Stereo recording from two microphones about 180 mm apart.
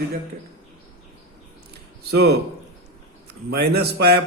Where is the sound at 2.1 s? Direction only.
65° right (ahead or behind).